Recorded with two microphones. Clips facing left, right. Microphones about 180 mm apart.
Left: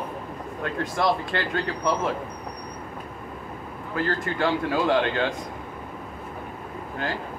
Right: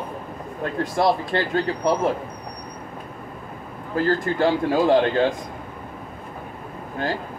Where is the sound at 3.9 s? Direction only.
40° right (ahead or behind).